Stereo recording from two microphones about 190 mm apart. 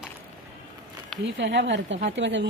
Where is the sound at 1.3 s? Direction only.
65° right (ahead or behind).